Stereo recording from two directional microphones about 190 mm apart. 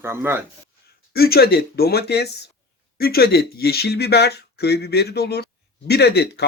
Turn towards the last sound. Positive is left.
turn(degrees=60)  # may be behind; listen again after turning